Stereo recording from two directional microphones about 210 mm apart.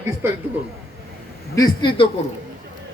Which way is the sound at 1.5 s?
20° left (ahead or behind).